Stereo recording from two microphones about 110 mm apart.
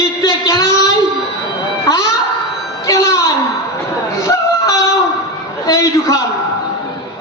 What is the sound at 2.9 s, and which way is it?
Music, 30° left (ahead or behind).